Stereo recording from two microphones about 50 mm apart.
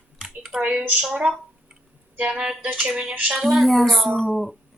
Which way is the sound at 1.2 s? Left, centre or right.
Right.